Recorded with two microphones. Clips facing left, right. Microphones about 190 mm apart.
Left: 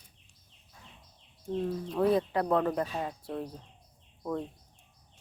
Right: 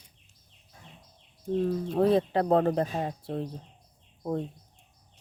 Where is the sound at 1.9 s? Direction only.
25° right (ahead or behind).